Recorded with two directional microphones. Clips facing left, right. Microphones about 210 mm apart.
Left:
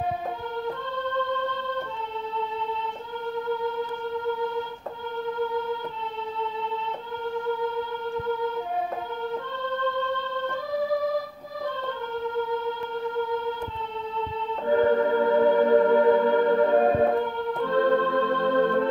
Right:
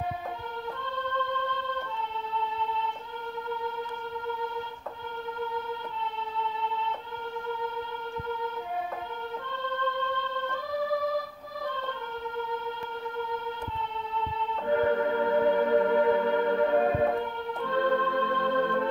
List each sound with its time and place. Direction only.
14.7 s organ: 35° left (ahead or behind)